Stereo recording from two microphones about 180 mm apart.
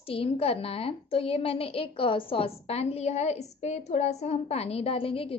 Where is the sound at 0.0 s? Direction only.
30° left (ahead or behind).